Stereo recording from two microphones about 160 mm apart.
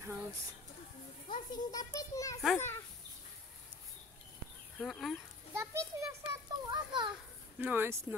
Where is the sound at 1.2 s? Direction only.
30° left (ahead or behind).